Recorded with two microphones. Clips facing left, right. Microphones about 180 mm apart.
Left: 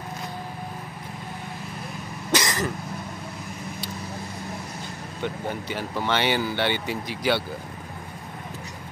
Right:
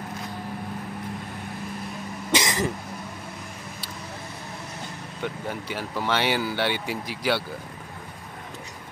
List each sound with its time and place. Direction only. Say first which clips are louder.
2.3 s cough: even; 20° right (ahead or behind)
5.2 s speech: left 2 dB; 5° right (ahead or behind)